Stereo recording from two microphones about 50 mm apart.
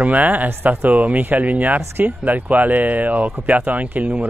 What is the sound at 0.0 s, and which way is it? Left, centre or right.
Speech, right.